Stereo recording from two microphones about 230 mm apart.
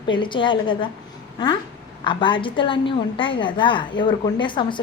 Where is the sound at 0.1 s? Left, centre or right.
Left.